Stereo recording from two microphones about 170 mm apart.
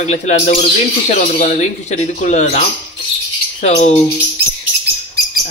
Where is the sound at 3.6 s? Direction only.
40° left (ahead or behind).